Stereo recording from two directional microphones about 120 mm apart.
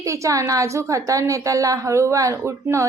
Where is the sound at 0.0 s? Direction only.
25° right (ahead or behind).